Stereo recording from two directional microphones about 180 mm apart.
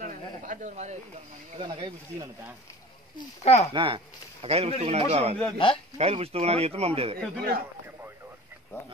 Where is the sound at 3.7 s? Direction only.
30° right (ahead or behind).